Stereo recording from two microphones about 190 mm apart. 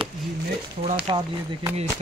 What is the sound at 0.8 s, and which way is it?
Speech, 30° right (ahead or behind).